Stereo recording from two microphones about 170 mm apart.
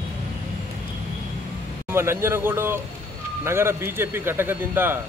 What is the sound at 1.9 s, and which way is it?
Speech, 15° right (ahead or behind).